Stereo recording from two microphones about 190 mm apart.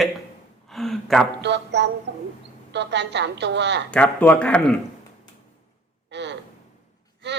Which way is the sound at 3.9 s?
10° left (ahead or behind).